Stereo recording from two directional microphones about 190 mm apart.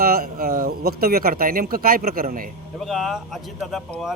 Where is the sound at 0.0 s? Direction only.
50° right (ahead or behind).